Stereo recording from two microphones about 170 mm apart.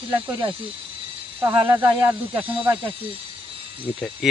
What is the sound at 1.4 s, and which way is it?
Speech, 10° right (ahead or behind).